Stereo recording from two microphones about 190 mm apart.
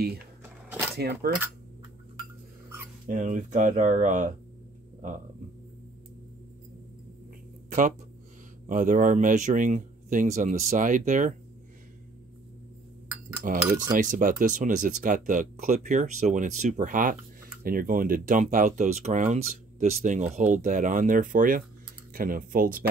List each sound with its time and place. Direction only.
0.4 s cash register: 10° right (ahead or behind)
0.9 s speech: 60° right (ahead or behind)
3.1 s speech: 40° right (ahead or behind)
8.6 s speech: 45° right (ahead or behind)
13.7 s cutlery: 20° right (ahead or behind)
13.9 s speech: 45° right (ahead or behind)